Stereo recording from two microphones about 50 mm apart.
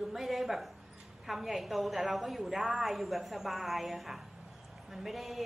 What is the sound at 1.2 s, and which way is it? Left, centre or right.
Speech, centre.